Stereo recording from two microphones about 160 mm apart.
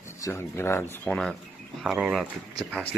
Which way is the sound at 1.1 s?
Centre (ahead or behind).